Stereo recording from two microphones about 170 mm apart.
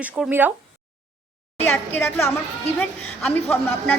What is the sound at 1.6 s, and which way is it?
A woman's voice, 10° left (ahead or behind).